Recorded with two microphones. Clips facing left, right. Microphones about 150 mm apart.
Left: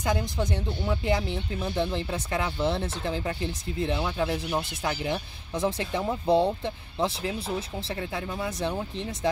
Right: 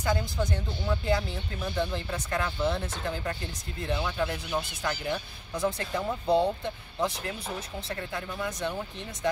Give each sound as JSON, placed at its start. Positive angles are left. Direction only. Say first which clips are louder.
{"t": 0.2, "sound": "speech", "louder": "left 2 dB", "side_deg": 20}
{"t": 4.5, "sound": "speech", "louder": "left 2 dB", "side_deg": 15}